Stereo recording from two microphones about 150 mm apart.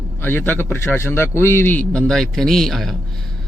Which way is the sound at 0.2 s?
15° left (ahead or behind).